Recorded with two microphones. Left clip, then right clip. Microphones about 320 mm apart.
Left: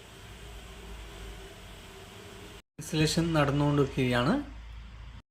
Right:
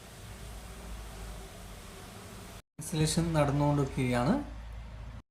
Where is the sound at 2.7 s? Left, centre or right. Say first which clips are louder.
Left 4 dB; centre.